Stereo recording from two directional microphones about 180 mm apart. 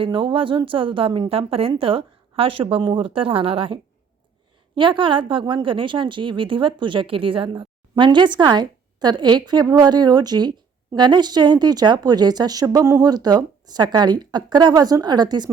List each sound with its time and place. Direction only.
0.0 s a woman's voice: 30° right (ahead or behind)